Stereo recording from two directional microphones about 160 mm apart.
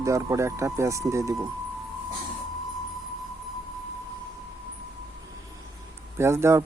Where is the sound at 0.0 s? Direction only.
20° right (ahead or behind).